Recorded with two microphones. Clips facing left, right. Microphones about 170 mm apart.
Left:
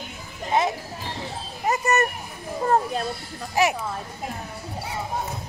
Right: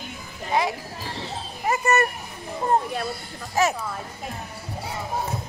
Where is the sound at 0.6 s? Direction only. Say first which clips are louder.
Left 1 dB; 25° left (ahead or behind).